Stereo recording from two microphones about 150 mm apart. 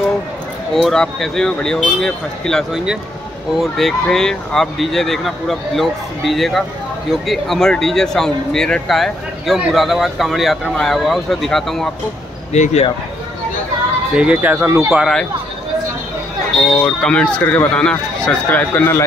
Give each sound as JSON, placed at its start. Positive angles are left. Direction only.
{"t": 0.7, "sound": "speech", "side_deg": 0}
{"t": 12.5, "sound": "speech", "side_deg": 50}
{"t": 14.1, "sound": "speech", "side_deg": -5}
{"t": 16.7, "sound": "speech", "side_deg": 5}